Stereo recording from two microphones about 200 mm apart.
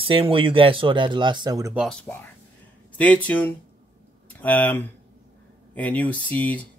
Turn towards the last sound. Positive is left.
turn(degrees=5)  # may be behind; listen again after turning